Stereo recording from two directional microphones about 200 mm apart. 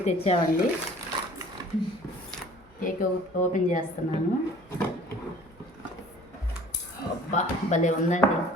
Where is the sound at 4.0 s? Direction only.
40° left (ahead or behind).